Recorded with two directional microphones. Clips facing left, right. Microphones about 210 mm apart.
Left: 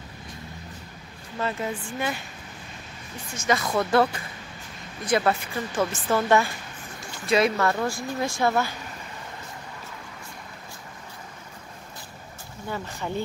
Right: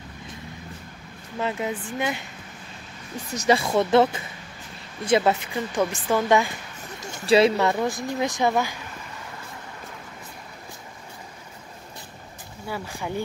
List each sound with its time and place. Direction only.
1.4 s a woman's voice: 15° right (ahead or behind)
3.3 s a woman's voice: 30° right (ahead or behind)
7.0 s a sound: 35° right (ahead or behind)
7.5 s a woman's voice: 20° right (ahead or behind)
12.6 s a woman's voice: 10° right (ahead or behind)